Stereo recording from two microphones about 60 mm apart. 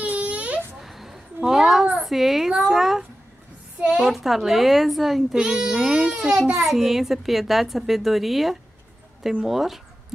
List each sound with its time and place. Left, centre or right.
0.0 s baby cry: right
0.7 s a sound: centre
3.8 s a child's voice: centre
4.1 s a woman's voice: centre
6.5 s a woman's voice: centre